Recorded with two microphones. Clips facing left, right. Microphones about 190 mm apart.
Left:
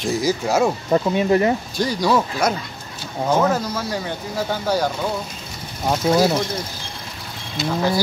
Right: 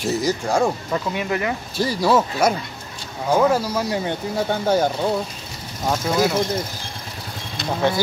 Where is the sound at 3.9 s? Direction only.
25° right (ahead or behind).